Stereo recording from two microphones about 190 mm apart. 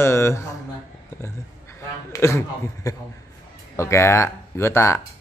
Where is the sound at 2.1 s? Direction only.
15° left (ahead or behind).